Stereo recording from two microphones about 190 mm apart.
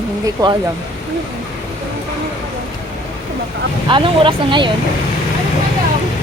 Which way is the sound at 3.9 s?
25° right (ahead or behind).